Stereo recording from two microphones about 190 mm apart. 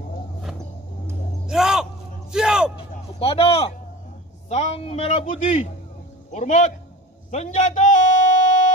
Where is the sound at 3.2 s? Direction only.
30° left (ahead or behind).